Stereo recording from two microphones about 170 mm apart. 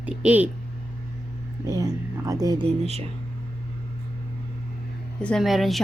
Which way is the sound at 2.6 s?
35° right (ahead or behind).